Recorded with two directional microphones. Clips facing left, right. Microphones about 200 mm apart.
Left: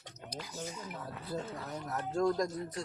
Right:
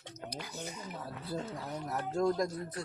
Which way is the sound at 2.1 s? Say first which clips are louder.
Even; 5° right (ahead or behind).